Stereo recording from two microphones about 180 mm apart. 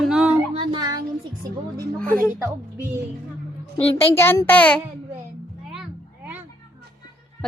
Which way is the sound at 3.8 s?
30° left (ahead or behind).